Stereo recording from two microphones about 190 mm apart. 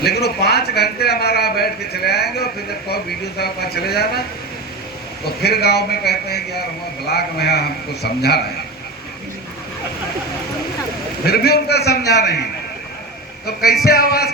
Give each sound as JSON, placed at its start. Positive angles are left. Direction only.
{"t": 0.0, "sound": "a sound", "side_deg": 60}
{"t": 5.4, "sound": "a man's voice", "side_deg": 60}
{"t": 11.3, "sound": "a man's voice", "side_deg": 60}
{"t": 13.8, "sound": "speech", "side_deg": 55}